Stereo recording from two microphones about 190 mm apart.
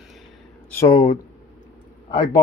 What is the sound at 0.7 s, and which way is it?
Speech, 15° left (ahead or behind).